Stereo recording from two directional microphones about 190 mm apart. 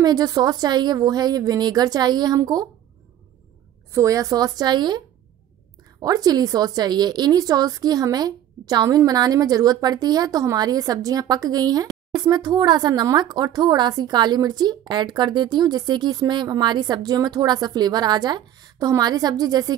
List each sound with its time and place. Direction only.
0.0 s speech: 20° right (ahead or behind)
3.9 s speech: 15° right (ahead or behind)